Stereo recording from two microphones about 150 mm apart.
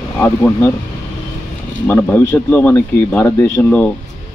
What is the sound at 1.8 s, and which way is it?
Speech, 10° left (ahead or behind).